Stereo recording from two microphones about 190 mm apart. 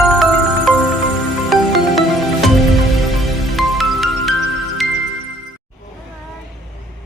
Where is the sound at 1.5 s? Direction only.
Centre (ahead or behind).